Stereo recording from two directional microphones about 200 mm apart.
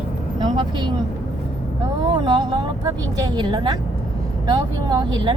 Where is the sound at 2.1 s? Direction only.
20° right (ahead or behind).